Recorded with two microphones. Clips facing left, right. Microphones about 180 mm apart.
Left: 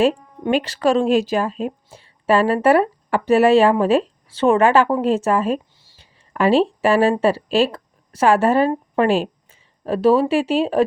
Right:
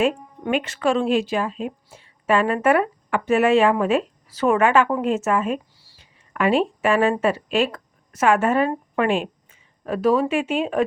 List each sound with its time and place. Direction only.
0.0 s speech: 30° left (ahead or behind)